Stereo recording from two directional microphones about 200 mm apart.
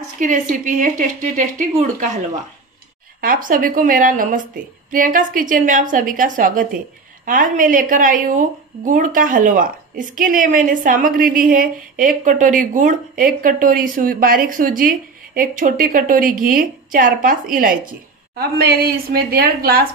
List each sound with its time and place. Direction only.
0.2 s a woman's voice: 40° right (ahead or behind)
3.2 s a woman's voice: 45° right (ahead or behind)